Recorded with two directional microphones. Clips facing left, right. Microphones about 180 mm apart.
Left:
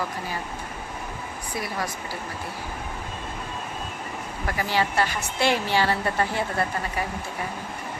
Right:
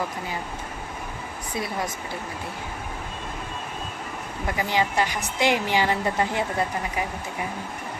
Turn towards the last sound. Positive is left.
turn(degrees=-15)  # may be behind; listen again after turning